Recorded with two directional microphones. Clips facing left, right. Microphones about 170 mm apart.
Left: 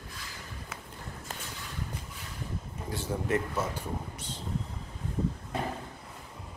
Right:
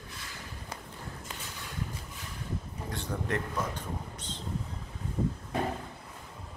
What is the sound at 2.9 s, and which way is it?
Speech, 5° left (ahead or behind).